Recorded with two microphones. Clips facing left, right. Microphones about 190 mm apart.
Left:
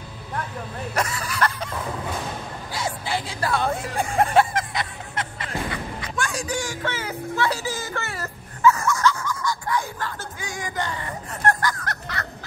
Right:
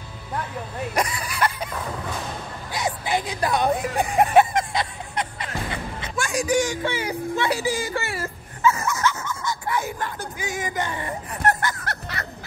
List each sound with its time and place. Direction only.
0.9 s speech: 10° right (ahead or behind)
2.7 s chuckle: 20° right (ahead or behind)
6.2 s speech: 15° right (ahead or behind)
8.6 s dog: 20° right (ahead or behind)